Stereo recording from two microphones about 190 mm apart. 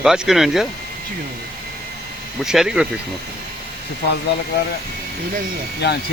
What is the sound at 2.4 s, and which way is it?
Speech, 5° right (ahead or behind).